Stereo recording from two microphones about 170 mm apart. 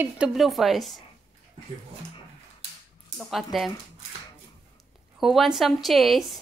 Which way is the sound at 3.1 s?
Centre (ahead or behind).